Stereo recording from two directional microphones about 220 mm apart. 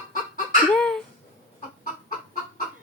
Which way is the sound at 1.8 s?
40° left (ahead or behind).